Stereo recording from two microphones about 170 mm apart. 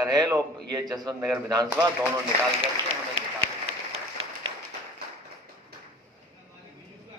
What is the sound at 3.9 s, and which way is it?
Applause, 35° right (ahead or behind).